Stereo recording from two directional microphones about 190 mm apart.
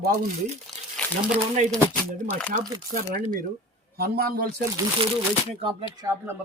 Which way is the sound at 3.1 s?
45° right (ahead or behind).